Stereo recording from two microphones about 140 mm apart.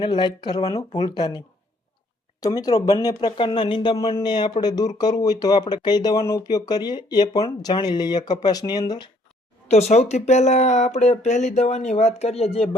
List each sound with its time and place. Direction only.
0.0 s speech: 30° left (ahead or behind)
2.4 s speech: 25° left (ahead or behind)
9.6 s speech: 50° left (ahead or behind)